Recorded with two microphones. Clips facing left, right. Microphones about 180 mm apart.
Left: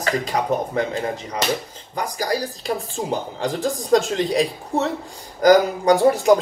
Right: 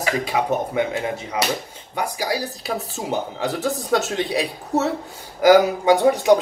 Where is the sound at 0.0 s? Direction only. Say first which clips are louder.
Even; 5° right (ahead or behind).